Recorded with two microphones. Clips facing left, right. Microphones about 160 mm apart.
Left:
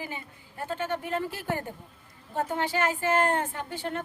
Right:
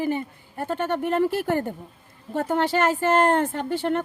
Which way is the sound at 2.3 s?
70° right (ahead or behind).